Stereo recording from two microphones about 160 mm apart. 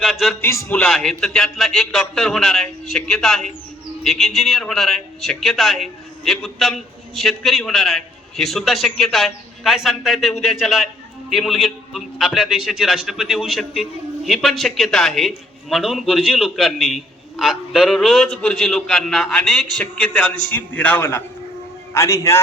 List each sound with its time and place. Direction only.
0.0 s a man's voice: centre (ahead or behind)
0.4 s a man's voice: 15° left (ahead or behind)
0.9 s a man's voice: centre (ahead or behind); by 22.4 s 15° left (ahead or behind)